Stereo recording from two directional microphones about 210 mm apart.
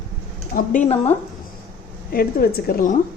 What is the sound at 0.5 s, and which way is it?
Speech, 40° left (ahead or behind).